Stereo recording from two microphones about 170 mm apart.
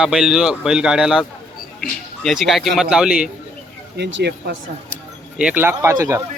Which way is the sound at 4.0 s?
85° right.